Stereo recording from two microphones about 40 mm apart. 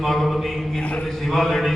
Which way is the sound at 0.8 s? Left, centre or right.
Left.